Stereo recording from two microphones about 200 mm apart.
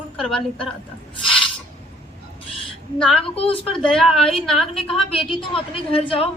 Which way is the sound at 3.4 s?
25° left (ahead or behind).